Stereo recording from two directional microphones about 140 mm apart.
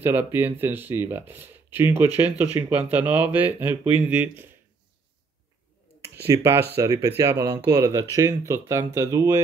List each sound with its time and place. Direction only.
0.0 s speech: 15° right (ahead or behind)
6.0 s speech: 20° right (ahead or behind)